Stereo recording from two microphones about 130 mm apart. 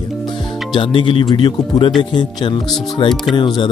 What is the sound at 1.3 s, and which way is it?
Speech, 35° left (ahead or behind).